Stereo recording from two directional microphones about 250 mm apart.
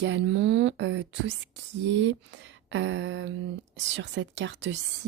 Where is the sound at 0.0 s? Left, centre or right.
Right.